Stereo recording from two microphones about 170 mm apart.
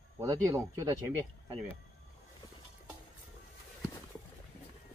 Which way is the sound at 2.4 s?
20° left (ahead or behind).